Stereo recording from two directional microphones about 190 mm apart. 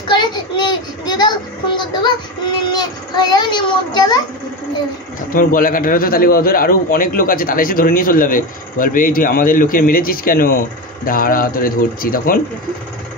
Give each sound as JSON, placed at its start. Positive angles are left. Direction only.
{"t": 0.1, "sound": "child singing", "side_deg": 25}
{"t": 5.3, "sound": "a man's voice", "side_deg": 45}